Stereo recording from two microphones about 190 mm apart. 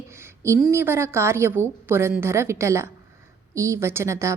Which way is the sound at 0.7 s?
15° right (ahead or behind).